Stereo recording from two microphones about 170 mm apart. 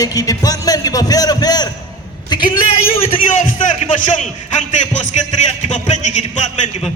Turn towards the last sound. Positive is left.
turn(degrees=45)  # may be behind; listen again after turning